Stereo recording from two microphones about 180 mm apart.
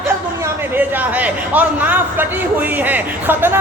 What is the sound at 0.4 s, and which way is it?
A man's voice, 10° right (ahead or behind).